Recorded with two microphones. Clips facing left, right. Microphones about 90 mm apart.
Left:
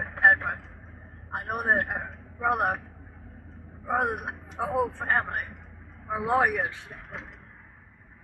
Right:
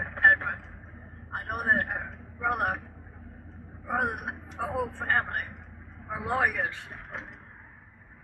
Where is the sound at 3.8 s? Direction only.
20° left (ahead or behind).